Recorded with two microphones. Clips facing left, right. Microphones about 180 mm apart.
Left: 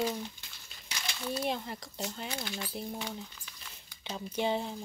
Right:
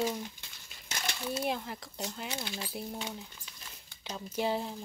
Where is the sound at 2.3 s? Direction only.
20° right (ahead or behind).